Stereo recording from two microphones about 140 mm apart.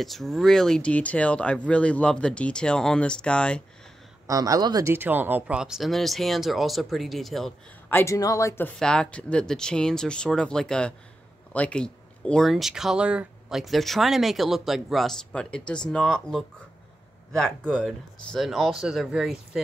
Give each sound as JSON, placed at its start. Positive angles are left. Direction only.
{"t": 0.0, "sound": "speech", "side_deg": 0}
{"t": 4.3, "sound": "speech", "side_deg": -25}
{"t": 4.9, "sound": "speech", "side_deg": -15}
{"t": 7.9, "sound": "speech", "side_deg": 20}
{"t": 8.7, "sound": "speech", "side_deg": 5}